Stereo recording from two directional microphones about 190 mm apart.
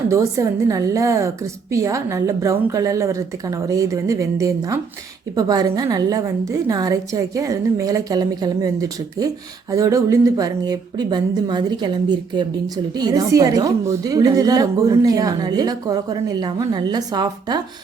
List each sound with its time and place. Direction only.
0.1 s a woman's voice: 15° right (ahead or behind)